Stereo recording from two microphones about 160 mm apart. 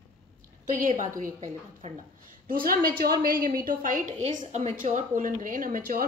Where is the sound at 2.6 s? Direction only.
65° right (ahead or behind).